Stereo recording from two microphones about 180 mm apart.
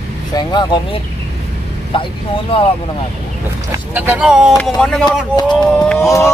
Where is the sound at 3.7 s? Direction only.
15° right (ahead or behind); by 6.0 s 5° left (ahead or behind).